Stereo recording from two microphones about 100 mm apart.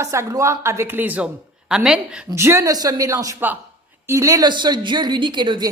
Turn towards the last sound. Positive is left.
turn(degrees=-50)  # may be behind; listen again after turning